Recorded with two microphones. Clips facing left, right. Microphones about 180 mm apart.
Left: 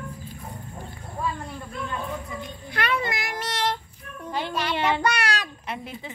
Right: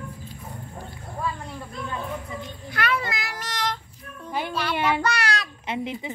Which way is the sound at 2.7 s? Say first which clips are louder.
Even; 25° left (ahead or behind).